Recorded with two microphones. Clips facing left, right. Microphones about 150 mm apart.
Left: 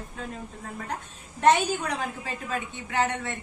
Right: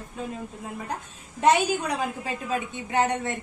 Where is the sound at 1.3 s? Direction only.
15° right (ahead or behind).